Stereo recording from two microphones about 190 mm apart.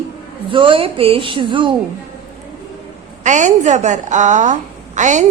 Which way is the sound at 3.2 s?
40° right (ahead or behind).